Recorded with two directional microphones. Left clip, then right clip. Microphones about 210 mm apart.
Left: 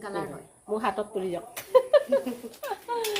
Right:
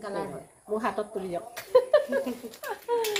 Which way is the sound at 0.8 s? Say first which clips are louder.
Left 3 dB; 40° left (ahead or behind).